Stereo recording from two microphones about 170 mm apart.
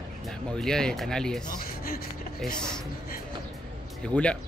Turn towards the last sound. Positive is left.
turn(degrees=5)  # may be behind; listen again after turning